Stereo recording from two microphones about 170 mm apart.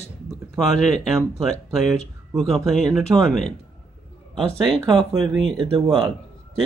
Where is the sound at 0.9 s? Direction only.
Centre (ahead or behind).